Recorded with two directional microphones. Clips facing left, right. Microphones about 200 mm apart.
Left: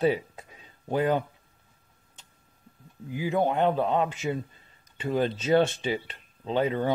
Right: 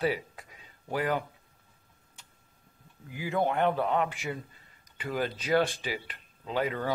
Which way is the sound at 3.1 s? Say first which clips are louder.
Left 3 dB; 15° left (ahead or behind).